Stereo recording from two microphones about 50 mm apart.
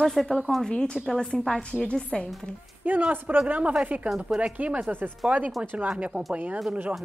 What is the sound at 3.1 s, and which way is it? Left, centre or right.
Speech, right.